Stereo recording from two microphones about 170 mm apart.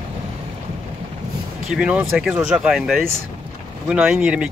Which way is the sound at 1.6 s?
5° right (ahead or behind).